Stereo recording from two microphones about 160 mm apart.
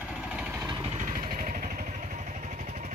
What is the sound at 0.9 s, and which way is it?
Vehicle, 55° right (ahead or behind).